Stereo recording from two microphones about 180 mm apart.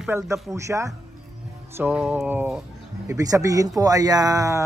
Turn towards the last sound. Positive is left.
turn(degrees=-20)  # may be behind; listen again after turning